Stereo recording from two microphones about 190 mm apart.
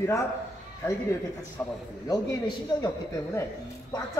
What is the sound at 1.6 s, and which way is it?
A man's voice, 20° left (ahead or behind).